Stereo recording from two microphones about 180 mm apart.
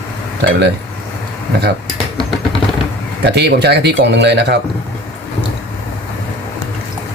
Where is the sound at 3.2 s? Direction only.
70° right (ahead or behind).